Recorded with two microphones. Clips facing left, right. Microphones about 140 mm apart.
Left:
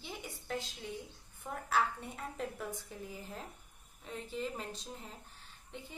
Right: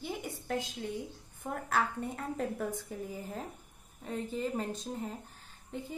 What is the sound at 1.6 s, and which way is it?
A woman's voice, 50° right (ahead or behind).